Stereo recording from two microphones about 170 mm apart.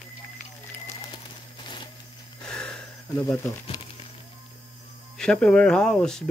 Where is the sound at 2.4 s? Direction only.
5° left (ahead or behind).